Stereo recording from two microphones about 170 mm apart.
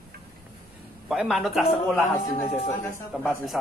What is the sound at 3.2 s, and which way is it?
Speech, centre (ahead or behind).